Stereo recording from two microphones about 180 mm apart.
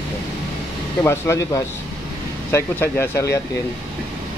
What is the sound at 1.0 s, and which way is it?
Speech, 15° left (ahead or behind).